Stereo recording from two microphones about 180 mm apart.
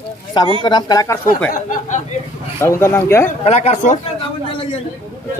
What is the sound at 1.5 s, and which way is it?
Speech, 45° left (ahead or behind).